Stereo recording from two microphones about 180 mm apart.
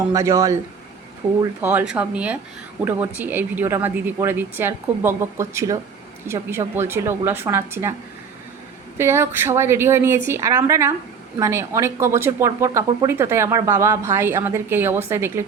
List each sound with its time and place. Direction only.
0.1 s speech: 15° right (ahead or behind)
9.0 s speech: 15° right (ahead or behind)